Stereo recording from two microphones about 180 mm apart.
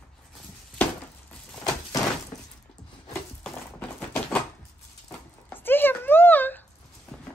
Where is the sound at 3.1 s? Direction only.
10° left (ahead or behind).